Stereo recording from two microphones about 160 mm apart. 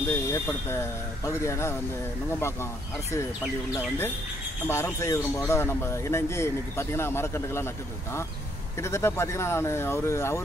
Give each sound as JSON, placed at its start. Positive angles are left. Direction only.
{"t": 0.1, "sound": "speech", "side_deg": 15}
{"t": 4.6, "sound": "speech", "side_deg": 15}